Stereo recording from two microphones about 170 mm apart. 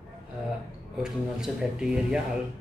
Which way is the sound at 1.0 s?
5° right (ahead or behind).